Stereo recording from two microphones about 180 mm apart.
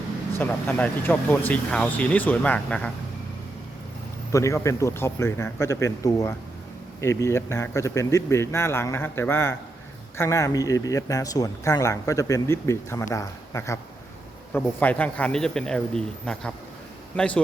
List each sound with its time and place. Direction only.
0.3 s speech: 10° left (ahead or behind)
4.3 s a man's voice: 15° left (ahead or behind)